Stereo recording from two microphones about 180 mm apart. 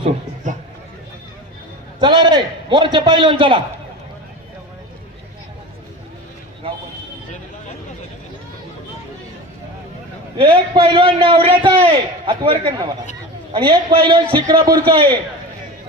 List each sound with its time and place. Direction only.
0.4 s a sound: 45° right (ahead or behind)
2.0 s a man's voice: 25° right (ahead or behind)
10.3 s a man's voice: 30° right (ahead or behind)